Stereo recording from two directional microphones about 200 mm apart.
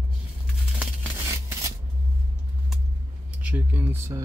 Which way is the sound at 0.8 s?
10° right (ahead or behind).